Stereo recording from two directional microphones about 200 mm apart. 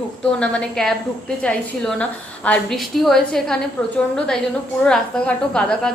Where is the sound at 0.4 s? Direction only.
5° left (ahead or behind).